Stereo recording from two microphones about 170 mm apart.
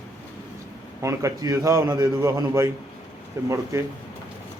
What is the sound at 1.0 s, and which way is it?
A man's voice, 20° right (ahead or behind).